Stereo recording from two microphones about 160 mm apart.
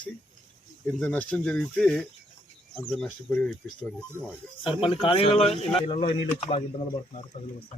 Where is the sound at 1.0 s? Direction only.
10° left (ahead or behind).